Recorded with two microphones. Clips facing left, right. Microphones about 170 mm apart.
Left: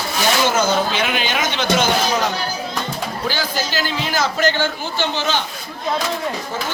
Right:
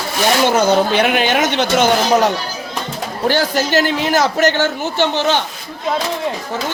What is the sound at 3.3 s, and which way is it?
A man's voice, 70° right (ahead or behind).